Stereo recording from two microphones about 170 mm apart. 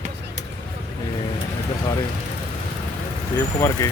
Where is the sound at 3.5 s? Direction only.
20° left (ahead or behind).